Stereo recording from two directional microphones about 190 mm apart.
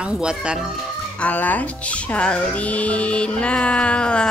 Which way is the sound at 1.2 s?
10° left (ahead or behind).